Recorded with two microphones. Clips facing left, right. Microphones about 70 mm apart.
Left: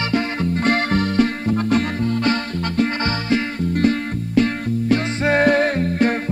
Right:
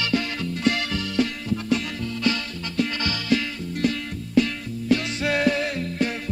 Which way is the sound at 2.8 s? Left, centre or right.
Left.